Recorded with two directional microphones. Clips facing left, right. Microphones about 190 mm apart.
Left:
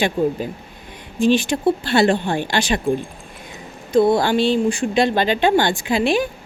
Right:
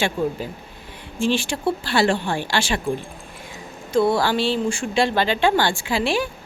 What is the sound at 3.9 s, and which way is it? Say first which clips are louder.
Speech: left 4 dB; 20° left (ahead or behind).